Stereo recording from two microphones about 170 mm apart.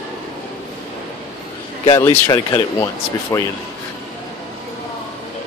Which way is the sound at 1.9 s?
30° left (ahead or behind).